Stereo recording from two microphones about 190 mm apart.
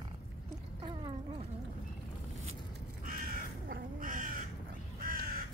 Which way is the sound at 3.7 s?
50° right (ahead or behind).